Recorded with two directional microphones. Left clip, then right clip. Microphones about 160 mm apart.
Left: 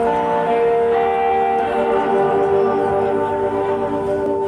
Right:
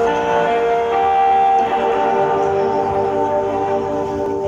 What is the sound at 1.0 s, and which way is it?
Music, 5° left (ahead or behind).